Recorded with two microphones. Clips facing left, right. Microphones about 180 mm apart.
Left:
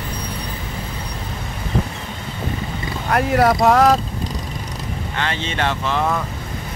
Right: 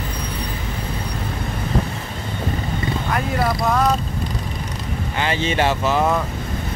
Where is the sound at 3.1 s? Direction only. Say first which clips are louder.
Left 7 dB; 65° left (ahead or behind).